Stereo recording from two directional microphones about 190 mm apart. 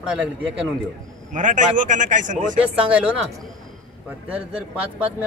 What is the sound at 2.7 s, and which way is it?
Speech, 5° right (ahead or behind).